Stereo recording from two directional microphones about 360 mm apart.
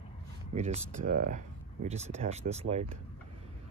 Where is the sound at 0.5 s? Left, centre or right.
Centre.